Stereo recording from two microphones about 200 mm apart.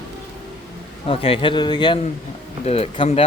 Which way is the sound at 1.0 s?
30° left (ahead or behind).